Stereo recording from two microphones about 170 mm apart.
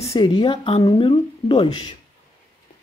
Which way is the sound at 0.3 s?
30° left (ahead or behind).